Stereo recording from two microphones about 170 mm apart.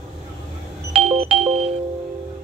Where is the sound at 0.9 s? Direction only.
35° right (ahead or behind).